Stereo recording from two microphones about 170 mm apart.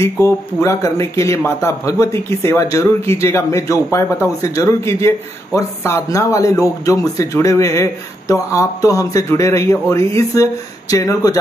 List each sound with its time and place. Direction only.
0.0 s a man's voice: 20° left (ahead or behind)